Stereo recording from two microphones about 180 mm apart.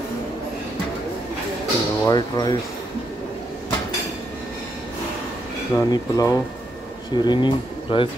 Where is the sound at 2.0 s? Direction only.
20° left (ahead or behind).